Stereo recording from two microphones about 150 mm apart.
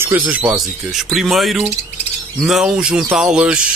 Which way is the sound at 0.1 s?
20° right (ahead or behind).